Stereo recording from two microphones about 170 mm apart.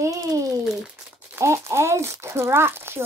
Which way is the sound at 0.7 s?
5° right (ahead or behind).